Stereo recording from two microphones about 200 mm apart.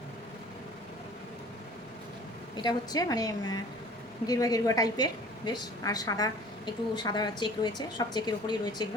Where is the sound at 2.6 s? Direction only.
20° left (ahead or behind).